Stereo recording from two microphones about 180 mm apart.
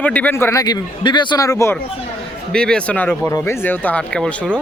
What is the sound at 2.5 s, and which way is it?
A man's voice, 5° left (ahead or behind).